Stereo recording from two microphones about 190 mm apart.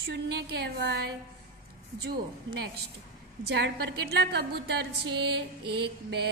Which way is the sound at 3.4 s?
60° right (ahead or behind).